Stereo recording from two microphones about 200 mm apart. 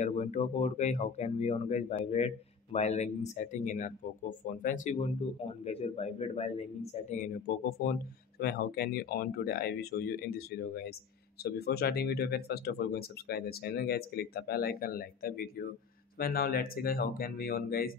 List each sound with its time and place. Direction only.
0.0 s speech: 35° left (ahead or behind)